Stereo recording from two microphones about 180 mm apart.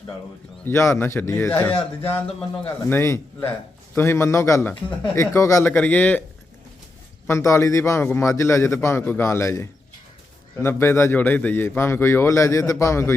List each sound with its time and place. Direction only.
0.6 s a man's voice: 15° left (ahead or behind)
7.3 s a man's voice: 15° left (ahead or behind)